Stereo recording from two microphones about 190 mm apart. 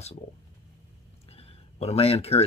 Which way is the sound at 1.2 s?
30° left (ahead or behind).